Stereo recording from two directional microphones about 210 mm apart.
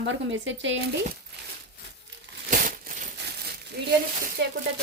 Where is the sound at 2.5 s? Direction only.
40° right (ahead or behind).